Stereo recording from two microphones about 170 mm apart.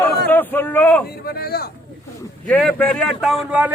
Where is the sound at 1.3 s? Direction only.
65° left (ahead or behind).